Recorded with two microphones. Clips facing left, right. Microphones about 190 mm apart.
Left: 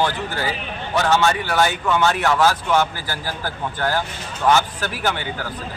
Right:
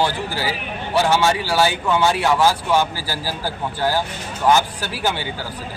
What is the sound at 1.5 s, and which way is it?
A man's voice, 10° right (ahead or behind).